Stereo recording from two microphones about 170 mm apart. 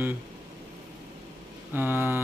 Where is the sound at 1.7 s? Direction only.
10° right (ahead or behind).